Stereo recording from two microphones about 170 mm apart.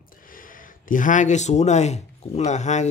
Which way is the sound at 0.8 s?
50° left (ahead or behind).